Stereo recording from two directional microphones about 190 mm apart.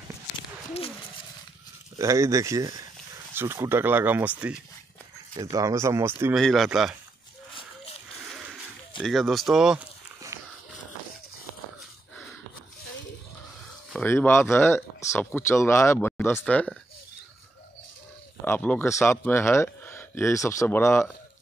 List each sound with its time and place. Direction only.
2.0 s speech: 15° right (ahead or behind)
5.3 s speech: 20° right (ahead or behind)
6.3 s speech: centre (ahead or behind)
7.5 s a sound: 30° left (ahead or behind)
9.0 s speech: centre (ahead or behind)
10.3 s walk: 15° right (ahead or behind)
13.9 s speech: 10° left (ahead or behind)
18.4 s speech: 10° left (ahead or behind)